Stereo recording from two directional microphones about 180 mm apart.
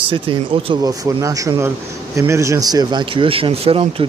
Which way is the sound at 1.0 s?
20° right (ahead or behind).